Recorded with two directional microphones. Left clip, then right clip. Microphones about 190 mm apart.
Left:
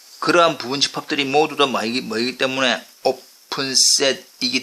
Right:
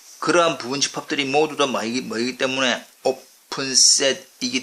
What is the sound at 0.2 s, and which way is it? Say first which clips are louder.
Speech: left 3 dB; 15° left (ahead or behind).